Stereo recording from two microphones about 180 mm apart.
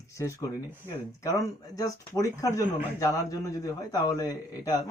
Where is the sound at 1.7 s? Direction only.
20° left (ahead or behind).